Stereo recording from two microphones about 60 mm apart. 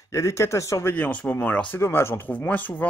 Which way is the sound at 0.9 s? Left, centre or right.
Left.